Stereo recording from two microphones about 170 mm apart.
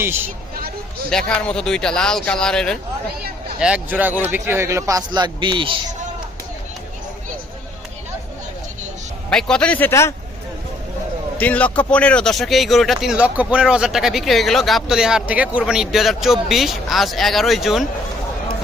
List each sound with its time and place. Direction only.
1.3 s speech: 5° left (ahead or behind)
3.6 s a man's voice: 5° right (ahead or behind); by 5.8 s 30° right (ahead or behind)
9.3 s speech: 5° left (ahead or behind)
11.3 s speech: 10° left (ahead or behind)